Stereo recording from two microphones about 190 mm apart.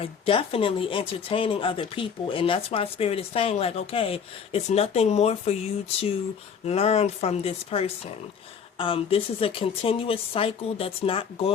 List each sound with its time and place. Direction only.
0.0 s speech: 30° left (ahead or behind)
6.7 s speech: 35° left (ahead or behind)